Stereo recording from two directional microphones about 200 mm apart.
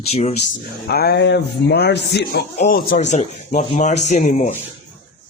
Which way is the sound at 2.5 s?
40° left (ahead or behind).